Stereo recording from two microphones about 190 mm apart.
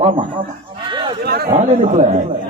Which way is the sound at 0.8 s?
25° right (ahead or behind).